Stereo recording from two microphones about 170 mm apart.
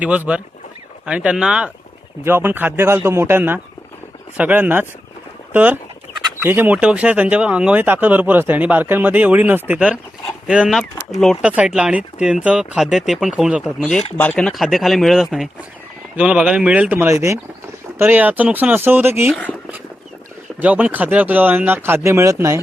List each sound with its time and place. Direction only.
0.0 s speech: 10° right (ahead or behind)
19.3 s speech: 10° left (ahead or behind)
20.6 s speech: 10° right (ahead or behind)